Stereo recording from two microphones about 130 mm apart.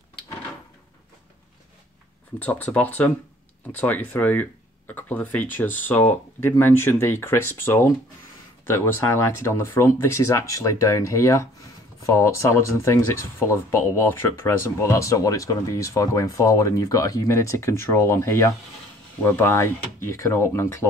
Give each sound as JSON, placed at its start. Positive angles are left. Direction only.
{"t": 2.3, "sound": "speech", "side_deg": 15}